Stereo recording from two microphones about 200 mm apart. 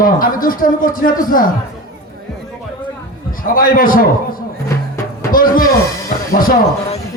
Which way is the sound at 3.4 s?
45° left (ahead or behind).